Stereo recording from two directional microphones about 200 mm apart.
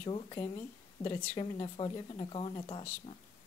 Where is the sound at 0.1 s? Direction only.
25° left (ahead or behind).